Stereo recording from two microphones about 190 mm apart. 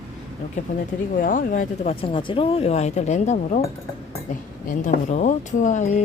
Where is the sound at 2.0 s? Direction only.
30° left (ahead or behind).